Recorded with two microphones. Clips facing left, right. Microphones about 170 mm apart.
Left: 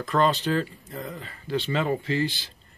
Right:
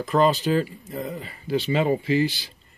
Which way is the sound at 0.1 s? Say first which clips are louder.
Right 3 dB; 5° right (ahead or behind).